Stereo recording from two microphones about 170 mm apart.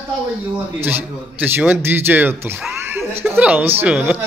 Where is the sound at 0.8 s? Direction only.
10° right (ahead or behind).